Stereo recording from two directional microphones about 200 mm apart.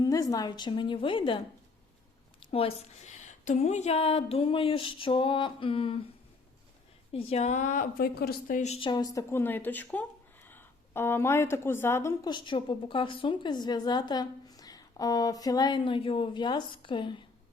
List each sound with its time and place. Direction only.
0.0 s a woman's voice: 15° left (ahead or behind)
2.4 s a woman's voice: 30° left (ahead or behind)
7.1 s a woman's voice: 30° left (ahead or behind)